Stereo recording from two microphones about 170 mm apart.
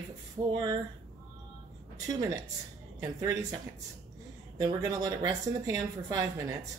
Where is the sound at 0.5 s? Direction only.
25° right (ahead or behind).